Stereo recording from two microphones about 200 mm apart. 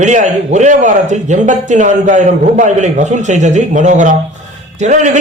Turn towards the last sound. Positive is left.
turn(degrees=-35)  # may be behind; listen again after turning